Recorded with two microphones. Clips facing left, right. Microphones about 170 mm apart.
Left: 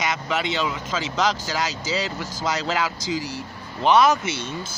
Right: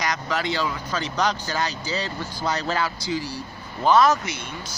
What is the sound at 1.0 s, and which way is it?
Speech, 90° left.